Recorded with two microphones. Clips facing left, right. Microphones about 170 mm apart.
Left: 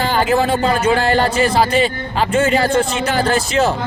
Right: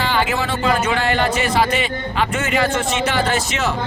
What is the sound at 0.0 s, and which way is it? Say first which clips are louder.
Speech: left 5 dB; 40° left (ahead or behind).